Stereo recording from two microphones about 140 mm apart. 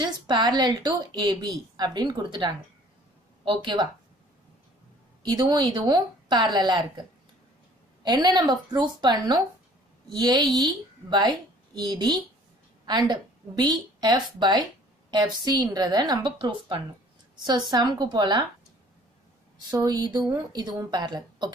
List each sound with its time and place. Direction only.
0.0 s a woman's voice: 30° right (ahead or behind)
5.2 s a woman's voice: 30° right (ahead or behind)
8.0 s a woman's voice: 30° right (ahead or behind)
19.7 s a woman's voice: 30° right (ahead or behind)